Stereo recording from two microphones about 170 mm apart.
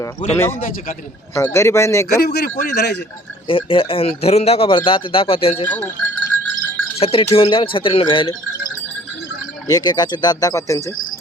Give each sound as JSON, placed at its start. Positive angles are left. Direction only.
{"t": 1.4, "sound": "speech", "side_deg": 15}
{"t": 2.0, "sound": "a man's voice", "side_deg": 70}
{"t": 3.4, "sound": "speech", "side_deg": 30}
{"t": 5.6, "sound": "sheep", "side_deg": 15}
{"t": 7.0, "sound": "speech", "side_deg": 35}
{"t": 9.6, "sound": "speech", "side_deg": 25}